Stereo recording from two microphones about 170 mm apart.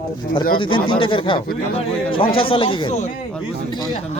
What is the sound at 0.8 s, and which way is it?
Speech, 30° left (ahead or behind).